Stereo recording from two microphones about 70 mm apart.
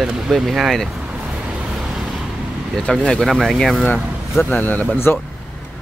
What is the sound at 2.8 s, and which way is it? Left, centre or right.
Speech, centre.